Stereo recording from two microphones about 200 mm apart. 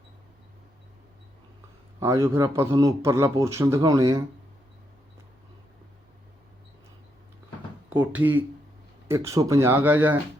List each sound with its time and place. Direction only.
2.0 s a man's voice: 15° right (ahead or behind)
7.9 s a man's voice: 10° right (ahead or behind)